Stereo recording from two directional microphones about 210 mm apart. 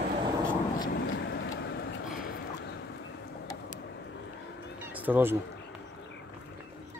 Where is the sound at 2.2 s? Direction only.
45° left (ahead or behind).